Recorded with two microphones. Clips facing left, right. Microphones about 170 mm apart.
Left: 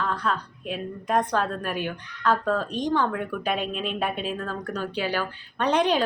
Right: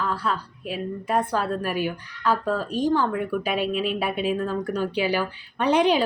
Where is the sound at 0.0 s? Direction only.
5° right (ahead or behind).